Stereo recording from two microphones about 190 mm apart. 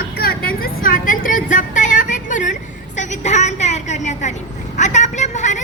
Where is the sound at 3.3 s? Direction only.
35° left (ahead or behind).